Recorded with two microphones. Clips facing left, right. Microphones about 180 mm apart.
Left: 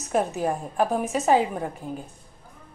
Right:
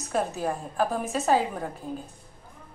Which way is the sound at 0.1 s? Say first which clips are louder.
Left 3 dB; 15° left (ahead or behind).